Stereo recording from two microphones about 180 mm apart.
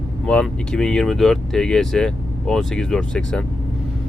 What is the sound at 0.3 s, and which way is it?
Speech, 5° left (ahead or behind).